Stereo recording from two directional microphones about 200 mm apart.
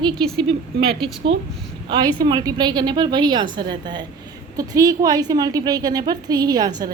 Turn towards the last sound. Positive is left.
turn(degrees=-20)  # may be behind; listen again after turning